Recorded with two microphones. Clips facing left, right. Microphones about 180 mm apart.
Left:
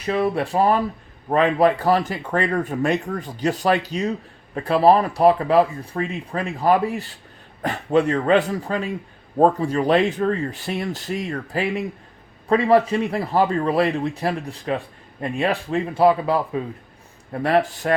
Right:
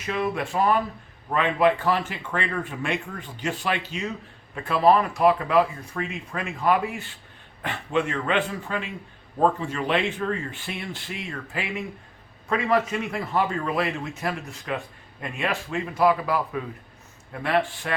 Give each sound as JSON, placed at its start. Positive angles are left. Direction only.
{"t": 0.0, "sound": "a man's voice", "side_deg": 35}
{"t": 17.3, "sound": "speech", "side_deg": 40}